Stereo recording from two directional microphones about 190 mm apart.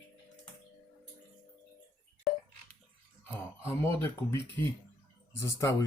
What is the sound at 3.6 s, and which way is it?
Speech, 10° left (ahead or behind).